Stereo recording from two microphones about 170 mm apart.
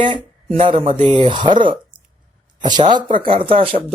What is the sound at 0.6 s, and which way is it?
Speech, 35° right (ahead or behind).